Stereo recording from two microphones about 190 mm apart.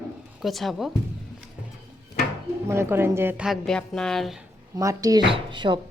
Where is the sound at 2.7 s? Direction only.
15° right (ahead or behind).